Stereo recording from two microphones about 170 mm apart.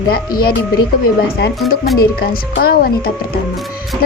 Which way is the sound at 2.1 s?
60° left (ahead or behind).